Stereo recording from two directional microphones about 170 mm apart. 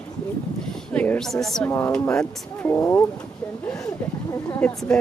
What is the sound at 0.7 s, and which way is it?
Speech, 10° left (ahead or behind).